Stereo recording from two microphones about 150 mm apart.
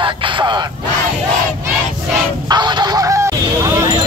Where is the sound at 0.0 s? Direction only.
30° right (ahead or behind).